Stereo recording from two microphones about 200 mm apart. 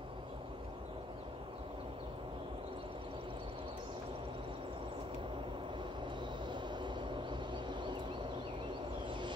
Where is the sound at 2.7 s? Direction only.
25° right (ahead or behind).